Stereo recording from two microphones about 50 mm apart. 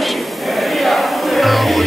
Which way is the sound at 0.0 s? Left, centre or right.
Centre.